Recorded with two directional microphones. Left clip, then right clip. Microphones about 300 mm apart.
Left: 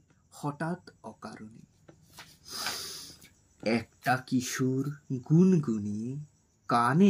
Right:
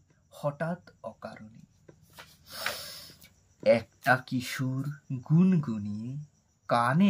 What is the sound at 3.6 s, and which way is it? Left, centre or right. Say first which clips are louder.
Speech: right 7 dB; right.